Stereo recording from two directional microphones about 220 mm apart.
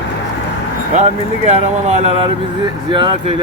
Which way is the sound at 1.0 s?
30° right (ahead or behind).